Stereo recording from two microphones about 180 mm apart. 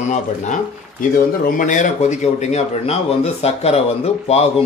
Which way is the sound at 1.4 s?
45° left (ahead or behind).